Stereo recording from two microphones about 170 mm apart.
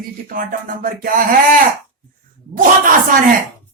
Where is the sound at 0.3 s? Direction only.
55° right (ahead or behind).